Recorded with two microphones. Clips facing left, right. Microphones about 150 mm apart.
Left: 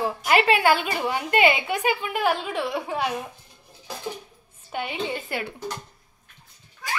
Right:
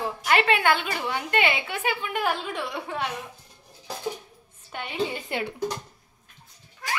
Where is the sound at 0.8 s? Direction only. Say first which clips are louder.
Left 3 dB; 15° left (ahead or behind).